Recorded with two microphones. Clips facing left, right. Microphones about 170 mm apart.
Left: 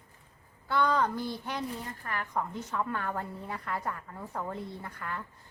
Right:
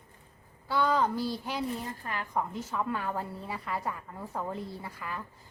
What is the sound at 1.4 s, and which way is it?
A woman's voice, 15° right (ahead or behind).